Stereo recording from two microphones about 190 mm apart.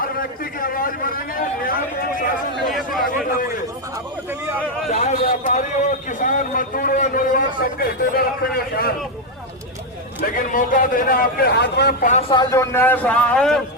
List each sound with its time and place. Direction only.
0.0 s a sound: 50° left (ahead or behind)
3.0 s a man's voice: 45° left (ahead or behind)
4.9 s a man's voice: 35° left (ahead or behind); by 8.9 s 55° left (ahead or behind)
10.2 s a man's voice: 45° left (ahead or behind)
12.3 s a man's voice: 20° left (ahead or behind)